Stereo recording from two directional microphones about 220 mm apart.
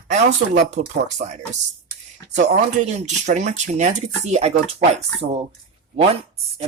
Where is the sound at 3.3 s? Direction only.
30° right (ahead or behind).